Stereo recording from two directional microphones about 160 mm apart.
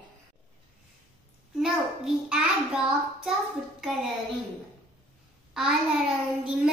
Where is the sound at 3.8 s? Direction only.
Centre (ahead or behind).